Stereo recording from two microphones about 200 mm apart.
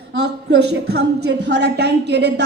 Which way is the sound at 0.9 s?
55° right (ahead or behind).